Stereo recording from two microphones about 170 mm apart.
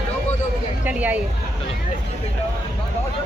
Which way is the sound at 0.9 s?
10° right (ahead or behind).